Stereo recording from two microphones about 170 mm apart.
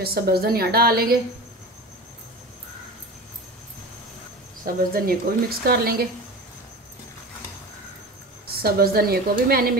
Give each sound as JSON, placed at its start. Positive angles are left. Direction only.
{"t": 0.0, "sound": "a woman's voice", "side_deg": -65}
{"t": 4.9, "sound": "a woman's voice", "side_deg": -65}
{"t": 8.6, "sound": "a woman's voice", "side_deg": -65}